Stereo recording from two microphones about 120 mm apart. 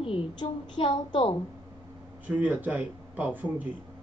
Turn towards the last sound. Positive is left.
turn(degrees=-15)  # may be behind; listen again after turning